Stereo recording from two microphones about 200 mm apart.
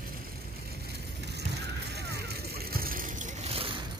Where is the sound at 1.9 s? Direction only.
55° right (ahead or behind); by 3.8 s 30° right (ahead or behind).